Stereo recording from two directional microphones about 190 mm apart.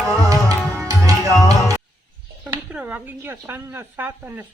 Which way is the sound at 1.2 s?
15° left (ahead or behind).